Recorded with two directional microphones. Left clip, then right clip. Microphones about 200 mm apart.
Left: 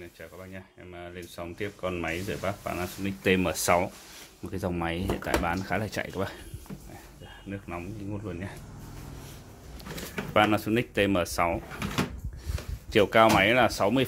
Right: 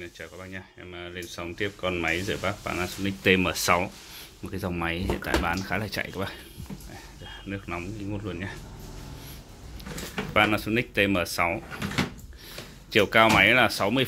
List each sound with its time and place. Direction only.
0.0 s speech: 5° left (ahead or behind)
7.4 s speech: 5° left (ahead or behind)
10.3 s speech: 20° left (ahead or behind)
12.9 s speech: 15° left (ahead or behind)